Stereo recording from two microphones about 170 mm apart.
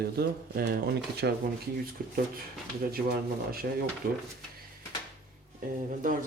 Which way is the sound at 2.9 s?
60° right (ahead or behind).